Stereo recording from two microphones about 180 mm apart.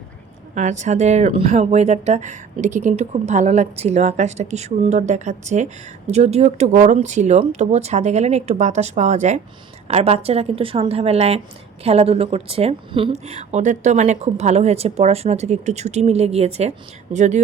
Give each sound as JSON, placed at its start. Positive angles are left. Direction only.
{"t": 0.5, "sound": "speech", "side_deg": -40}